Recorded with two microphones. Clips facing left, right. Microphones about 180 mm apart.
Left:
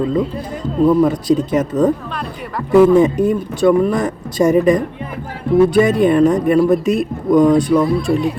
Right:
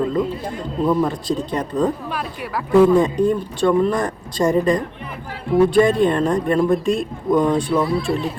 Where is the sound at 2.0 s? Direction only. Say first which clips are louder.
Left 1 dB; 5° right (ahead or behind).